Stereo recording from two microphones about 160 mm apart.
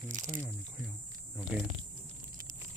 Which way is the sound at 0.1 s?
50° right (ahead or behind).